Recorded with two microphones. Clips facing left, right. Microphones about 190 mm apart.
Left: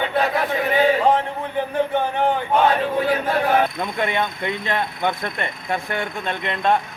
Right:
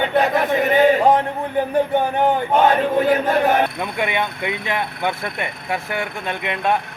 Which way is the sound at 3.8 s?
10° right (ahead or behind).